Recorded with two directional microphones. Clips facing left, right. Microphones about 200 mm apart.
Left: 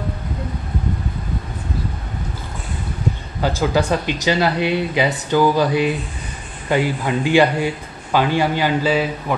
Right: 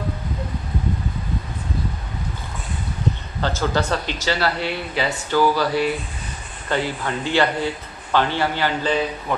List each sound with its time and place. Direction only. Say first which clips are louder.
3.3 s speech: left 4 dB; 10° left (ahead or behind)